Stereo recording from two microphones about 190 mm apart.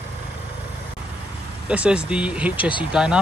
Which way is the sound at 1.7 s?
5° right (ahead or behind).